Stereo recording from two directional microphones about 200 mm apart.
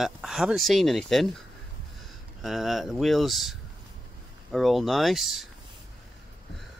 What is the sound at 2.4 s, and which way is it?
Speech, centre (ahead or behind).